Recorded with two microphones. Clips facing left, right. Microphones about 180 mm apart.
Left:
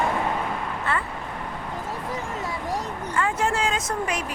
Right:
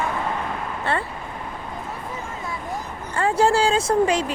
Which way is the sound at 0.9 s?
30° right (ahead or behind).